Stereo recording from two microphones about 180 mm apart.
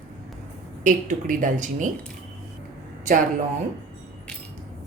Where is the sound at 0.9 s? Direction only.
45° right (ahead or behind).